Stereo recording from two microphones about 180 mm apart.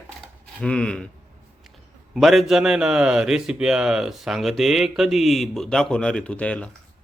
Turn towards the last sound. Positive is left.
turn(degrees=5)  # may be behind; listen again after turning